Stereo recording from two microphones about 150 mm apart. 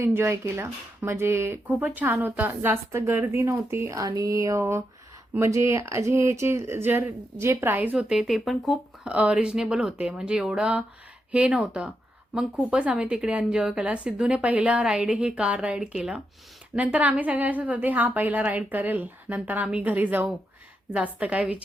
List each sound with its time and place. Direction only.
0.0 s speech: 15° right (ahead or behind)